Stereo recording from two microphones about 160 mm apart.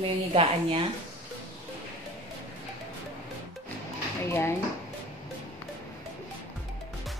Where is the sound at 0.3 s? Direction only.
35° right (ahead or behind).